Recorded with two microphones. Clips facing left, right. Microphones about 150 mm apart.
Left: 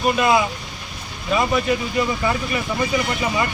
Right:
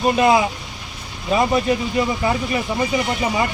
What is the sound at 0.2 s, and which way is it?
Speech, 25° right (ahead or behind).